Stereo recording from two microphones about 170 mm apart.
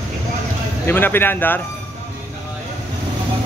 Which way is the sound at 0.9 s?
10° left (ahead or behind).